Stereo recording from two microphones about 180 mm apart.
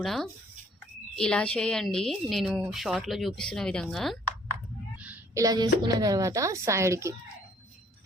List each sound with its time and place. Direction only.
0.0 s speech: centre (ahead or behind)
4.9 s a sound: 10° right (ahead or behind)
5.8 s speech: 20° right (ahead or behind)